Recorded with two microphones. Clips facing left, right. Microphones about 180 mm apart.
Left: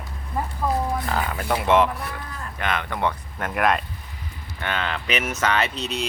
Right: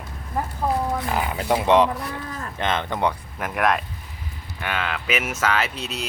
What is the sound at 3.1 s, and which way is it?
Speech, 5° right (ahead or behind).